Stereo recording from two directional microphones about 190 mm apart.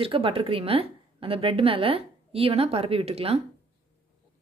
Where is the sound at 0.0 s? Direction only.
30° right (ahead or behind).